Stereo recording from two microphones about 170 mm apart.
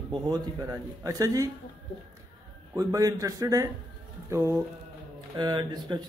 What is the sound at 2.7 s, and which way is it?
Speech, 20° right (ahead or behind).